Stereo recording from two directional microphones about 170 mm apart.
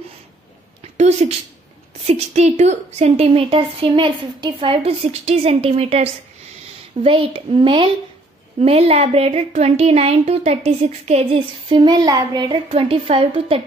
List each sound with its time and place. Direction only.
0.9 s a woman's voice: 40° right (ahead or behind)